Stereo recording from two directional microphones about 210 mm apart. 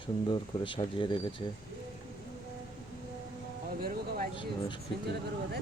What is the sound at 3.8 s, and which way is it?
Speech, 45° right (ahead or behind).